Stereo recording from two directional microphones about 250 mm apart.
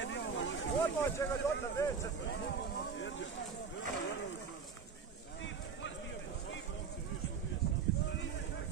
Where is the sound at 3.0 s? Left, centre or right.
Left.